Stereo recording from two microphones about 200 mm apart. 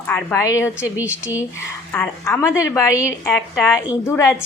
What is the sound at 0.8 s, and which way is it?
Speech, 10° right (ahead or behind).